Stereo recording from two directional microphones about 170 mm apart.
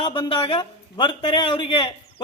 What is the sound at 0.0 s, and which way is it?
A man's voice, 30° left (ahead or behind).